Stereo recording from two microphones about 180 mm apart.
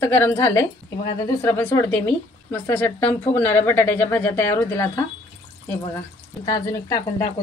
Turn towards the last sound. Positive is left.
turn(degrees=15)  # may be behind; listen again after turning